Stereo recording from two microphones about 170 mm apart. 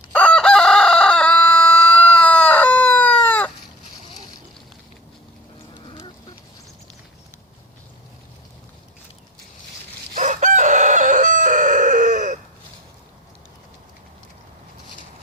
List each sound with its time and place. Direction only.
0.1 s chicken: 5° left (ahead or behind)
10.2 s chicken: 45° right (ahead or behind)